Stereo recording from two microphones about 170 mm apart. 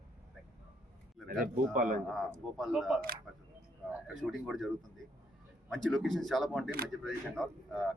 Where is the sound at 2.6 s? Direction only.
Centre (ahead or behind).